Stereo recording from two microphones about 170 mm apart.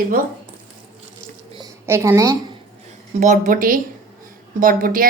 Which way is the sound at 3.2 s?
50° right (ahead or behind).